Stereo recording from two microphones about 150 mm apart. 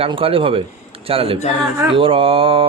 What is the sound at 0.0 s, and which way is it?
Mantra, 40° right (ahead or behind).